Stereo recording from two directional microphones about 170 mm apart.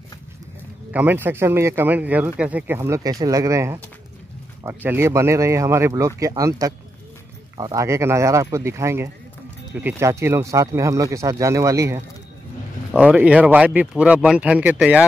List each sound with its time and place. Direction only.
0.9 s speech: 10° right (ahead or behind)
12.9 s speech: 10° right (ahead or behind)